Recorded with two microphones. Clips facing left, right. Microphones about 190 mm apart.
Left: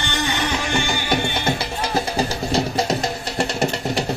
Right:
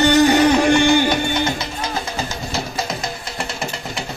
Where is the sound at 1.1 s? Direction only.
55° left (ahead or behind).